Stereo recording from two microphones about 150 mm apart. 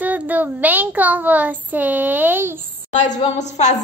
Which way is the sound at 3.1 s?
50° left (ahead or behind).